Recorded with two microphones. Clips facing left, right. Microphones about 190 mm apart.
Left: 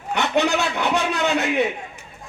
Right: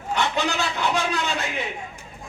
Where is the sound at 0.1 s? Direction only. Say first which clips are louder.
Left 4 dB; 65° left (ahead or behind).